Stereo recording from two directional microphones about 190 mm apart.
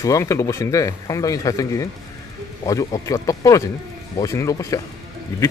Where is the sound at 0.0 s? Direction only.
15° left (ahead or behind).